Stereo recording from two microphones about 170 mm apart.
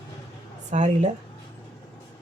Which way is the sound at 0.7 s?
45° right (ahead or behind).